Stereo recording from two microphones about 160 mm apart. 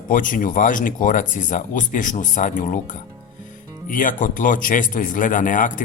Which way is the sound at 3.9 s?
55° left (ahead or behind).